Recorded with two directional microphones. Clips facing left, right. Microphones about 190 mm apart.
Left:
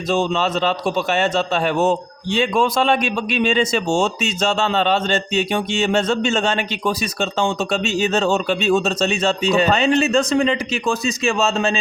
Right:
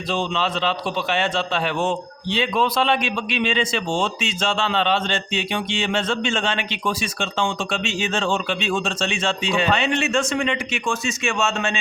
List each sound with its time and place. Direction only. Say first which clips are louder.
0.1 s a man's voice: left 5 dB; 45° left (ahead or behind)